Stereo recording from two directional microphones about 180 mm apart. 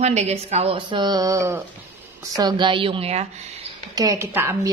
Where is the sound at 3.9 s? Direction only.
15° right (ahead or behind).